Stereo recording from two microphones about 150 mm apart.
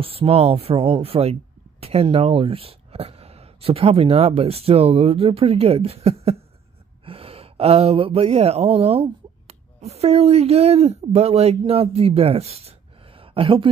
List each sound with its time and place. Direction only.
0.0 s speech: 40° right (ahead or behind)